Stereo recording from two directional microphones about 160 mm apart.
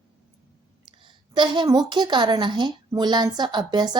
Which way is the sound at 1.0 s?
30° right (ahead or behind).